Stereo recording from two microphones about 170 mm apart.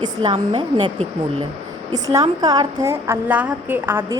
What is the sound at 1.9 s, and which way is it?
A woman's voice, 20° right (ahead or behind).